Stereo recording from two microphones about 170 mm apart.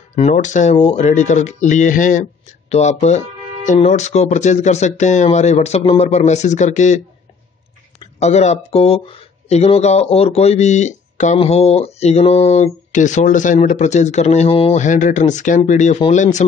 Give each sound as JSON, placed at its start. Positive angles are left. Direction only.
{"t": 0.3, "sound": "speech", "side_deg": 45}
{"t": 8.2, "sound": "speech", "side_deg": 40}